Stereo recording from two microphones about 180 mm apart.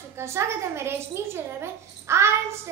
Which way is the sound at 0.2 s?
15° right (ahead or behind).